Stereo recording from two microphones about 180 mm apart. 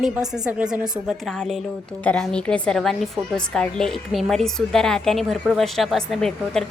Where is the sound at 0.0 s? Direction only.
5° right (ahead or behind).